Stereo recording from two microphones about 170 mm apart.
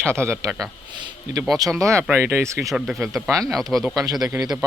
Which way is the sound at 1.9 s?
10° right (ahead or behind).